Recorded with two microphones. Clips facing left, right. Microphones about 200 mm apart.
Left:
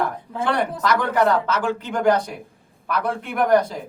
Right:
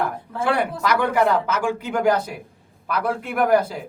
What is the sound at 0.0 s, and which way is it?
Speech, 10° right (ahead or behind).